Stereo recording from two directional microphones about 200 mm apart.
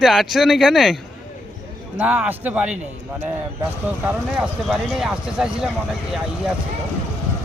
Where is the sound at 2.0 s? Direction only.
5° right (ahead or behind).